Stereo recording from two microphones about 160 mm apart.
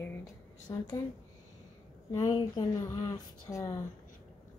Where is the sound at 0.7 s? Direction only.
25° left (ahead or behind).